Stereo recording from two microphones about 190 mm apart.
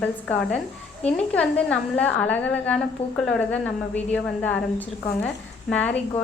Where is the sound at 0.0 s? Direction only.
5° left (ahead or behind).